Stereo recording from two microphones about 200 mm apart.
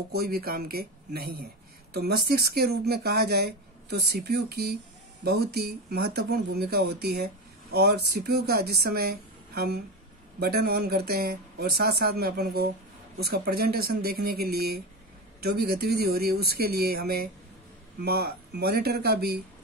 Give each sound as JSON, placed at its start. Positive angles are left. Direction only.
{"t": 0.1, "sound": "speech", "side_deg": -50}